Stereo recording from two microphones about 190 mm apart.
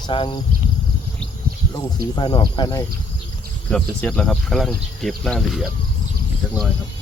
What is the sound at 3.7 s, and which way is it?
Speech, 5° left (ahead or behind).